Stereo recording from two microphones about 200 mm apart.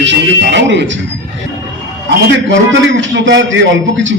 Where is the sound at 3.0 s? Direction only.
65° right (ahead or behind).